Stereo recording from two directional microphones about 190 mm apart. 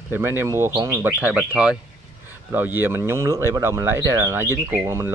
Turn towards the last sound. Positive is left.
turn(degrees=-10)  # may be behind; listen again after turning